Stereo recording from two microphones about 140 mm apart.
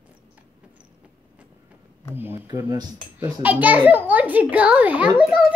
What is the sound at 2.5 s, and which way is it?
Cutlery, 30° right (ahead or behind).